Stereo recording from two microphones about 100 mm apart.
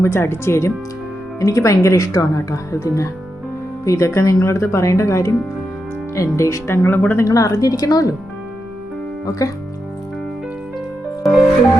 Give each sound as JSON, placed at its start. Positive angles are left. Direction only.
{"t": 0.0, "sound": "speech", "side_deg": 25}
{"t": 7.3, "sound": "speech", "side_deg": 35}
{"t": 11.2, "sound": "music", "side_deg": -5}